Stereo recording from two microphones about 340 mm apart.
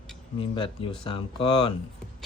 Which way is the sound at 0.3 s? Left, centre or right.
Centre.